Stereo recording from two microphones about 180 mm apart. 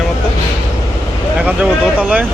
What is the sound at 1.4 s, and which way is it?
Speech, 5° right (ahead or behind).